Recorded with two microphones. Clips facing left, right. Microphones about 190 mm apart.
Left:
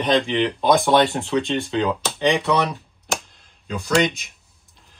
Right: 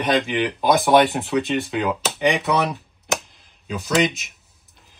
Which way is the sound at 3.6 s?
5° right (ahead or behind).